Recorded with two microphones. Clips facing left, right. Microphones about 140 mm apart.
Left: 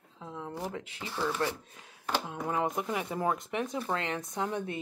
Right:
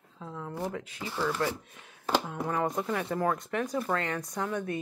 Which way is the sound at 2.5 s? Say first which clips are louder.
Right 1 dB; 15° left (ahead or behind).